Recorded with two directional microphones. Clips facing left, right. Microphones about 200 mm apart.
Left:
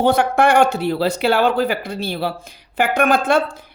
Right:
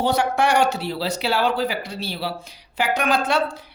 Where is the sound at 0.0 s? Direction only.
55° left (ahead or behind).